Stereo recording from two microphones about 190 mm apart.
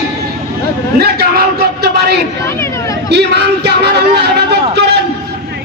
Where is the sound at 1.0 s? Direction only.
55° right (ahead or behind).